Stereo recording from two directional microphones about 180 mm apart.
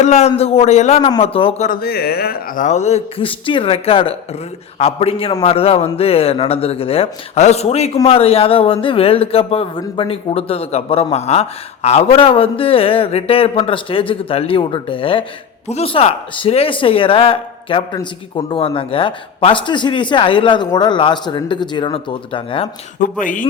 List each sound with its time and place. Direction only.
0.0 s speech: 40° left (ahead or behind)
1.6 s speech: 55° left (ahead or behind)
2.6 s a man's voice: 40° left (ahead or behind)
23.0 s speech: 50° left (ahead or behind)